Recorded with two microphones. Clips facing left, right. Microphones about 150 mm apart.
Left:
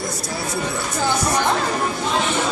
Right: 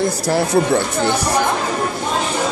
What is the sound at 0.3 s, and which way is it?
Speech, 75° right (ahead or behind).